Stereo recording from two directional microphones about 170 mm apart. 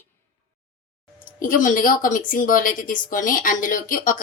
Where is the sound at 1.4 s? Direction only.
50° left (ahead or behind).